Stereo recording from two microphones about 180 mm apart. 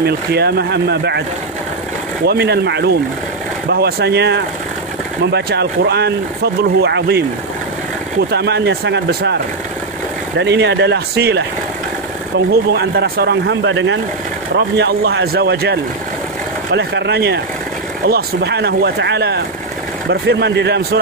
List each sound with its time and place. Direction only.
0.0 s speech: 65° right (ahead or behind)
2.2 s a man's voice: 65° right (ahead or behind)
8.3 s a man's voice: 65° right (ahead or behind)
10.4 s a man's voice: 70° right (ahead or behind)
12.7 s a man's voice: 60° right (ahead or behind); by 13.9 s 90° right
14.8 s a man's voice: 70° right (ahead or behind)